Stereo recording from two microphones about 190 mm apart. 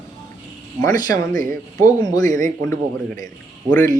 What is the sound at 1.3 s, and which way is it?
Speech, 45° right (ahead or behind).